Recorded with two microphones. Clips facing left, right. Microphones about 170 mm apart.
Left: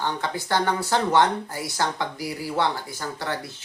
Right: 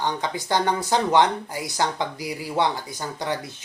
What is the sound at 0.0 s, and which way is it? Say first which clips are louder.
Speech: right 1 dB; 15° right (ahead or behind).